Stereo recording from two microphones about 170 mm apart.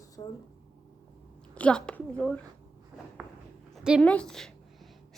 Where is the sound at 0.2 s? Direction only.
25° left (ahead or behind).